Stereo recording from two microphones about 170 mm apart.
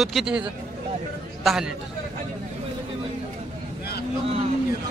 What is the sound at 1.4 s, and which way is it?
Speech, 5° right (ahead or behind).